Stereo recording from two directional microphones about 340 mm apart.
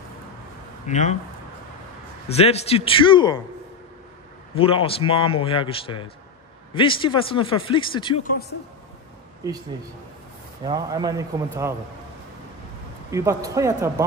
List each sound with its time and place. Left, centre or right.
0.8 s speech: left
2.2 s speech: centre
4.6 s speech: centre
10.6 s a man's voice: centre
13.1 s a man's voice: centre